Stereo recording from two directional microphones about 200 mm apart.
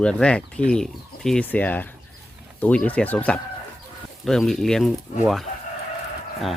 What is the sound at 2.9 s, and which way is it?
Speech, 5° left (ahead or behind).